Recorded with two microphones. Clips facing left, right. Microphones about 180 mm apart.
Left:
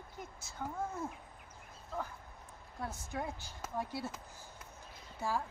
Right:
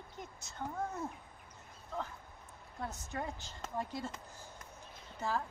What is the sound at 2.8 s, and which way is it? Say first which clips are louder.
Speech: left 1 dB; 10° left (ahead or behind).